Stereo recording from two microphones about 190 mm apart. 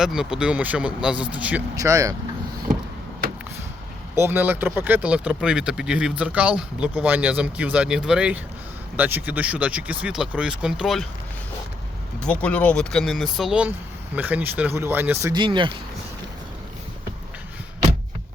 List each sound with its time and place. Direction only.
0.0 s speech: 5° right (ahead or behind)
4.1 s speech: 10° right (ahead or behind)
12.2 s speech: 5° left (ahead or behind); by 15.7 s 25° right (ahead or behind)